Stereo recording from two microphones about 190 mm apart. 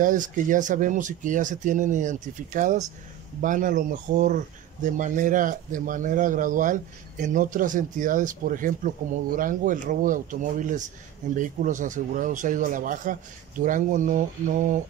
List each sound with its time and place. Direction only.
0.0 s speech: 45° right (ahead or behind)